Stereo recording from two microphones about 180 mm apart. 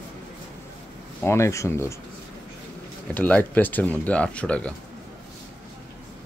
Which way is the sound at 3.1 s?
10° left (ahead or behind).